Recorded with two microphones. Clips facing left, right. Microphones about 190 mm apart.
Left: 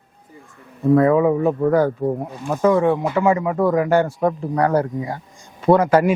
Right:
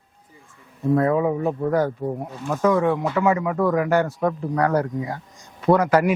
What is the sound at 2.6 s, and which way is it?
Speech, 30° left (ahead or behind).